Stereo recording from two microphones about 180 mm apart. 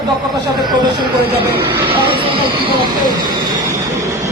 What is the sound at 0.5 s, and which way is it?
Speech, 25° right (ahead or behind).